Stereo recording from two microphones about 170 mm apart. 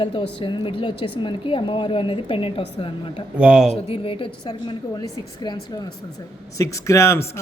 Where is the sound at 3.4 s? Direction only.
5° right (ahead or behind).